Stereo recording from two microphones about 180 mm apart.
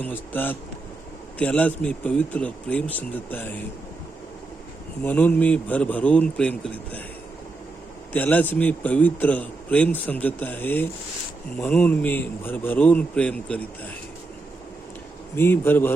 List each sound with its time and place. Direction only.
0.0 s a man's voice: 10° left (ahead or behind)
5.0 s a man's voice: 10° left (ahead or behind)
8.1 s a man's voice: 10° left (ahead or behind)
15.4 s a man's voice: 10° left (ahead or behind)